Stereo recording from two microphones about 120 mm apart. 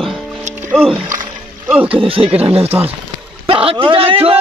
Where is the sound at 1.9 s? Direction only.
50° right (ahead or behind).